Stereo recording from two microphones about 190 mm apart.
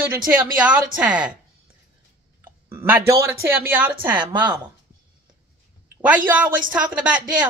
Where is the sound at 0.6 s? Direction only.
5° right (ahead or behind).